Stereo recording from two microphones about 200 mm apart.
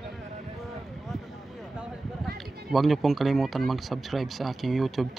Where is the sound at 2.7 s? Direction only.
Centre (ahead or behind).